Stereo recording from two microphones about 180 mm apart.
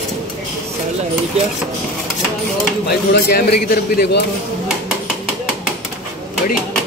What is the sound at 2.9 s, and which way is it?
A man's voice, 60° left (ahead or behind).